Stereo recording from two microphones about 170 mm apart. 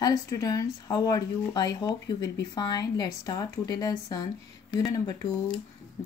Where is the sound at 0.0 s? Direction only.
20° left (ahead or behind).